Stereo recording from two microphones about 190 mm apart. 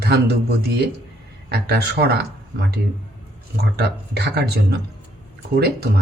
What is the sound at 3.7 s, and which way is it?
Speech, 55° right (ahead or behind).